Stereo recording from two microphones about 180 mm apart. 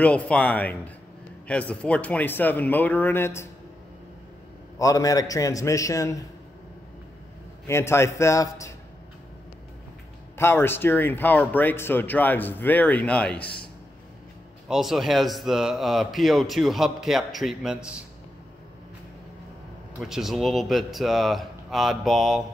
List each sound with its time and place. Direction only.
0.0 s speech: 5° left (ahead or behind)
4.7 s a man's voice: 20° left (ahead or behind)
7.6 s speech: 15° left (ahead or behind)
10.3 s speech: 15° left (ahead or behind)
14.7 s speech: centre (ahead or behind)
20.0 s speech: centre (ahead or behind)